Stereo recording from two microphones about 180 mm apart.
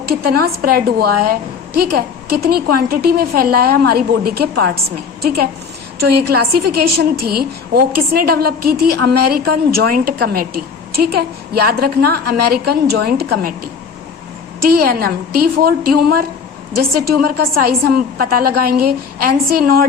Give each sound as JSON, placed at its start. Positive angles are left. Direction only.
{"t": 0.0, "sound": "a woman's voice", "side_deg": -60}
{"t": 14.7, "sound": "a woman's voice", "side_deg": -60}
{"t": 17.7, "sound": "a woman's voice", "side_deg": -55}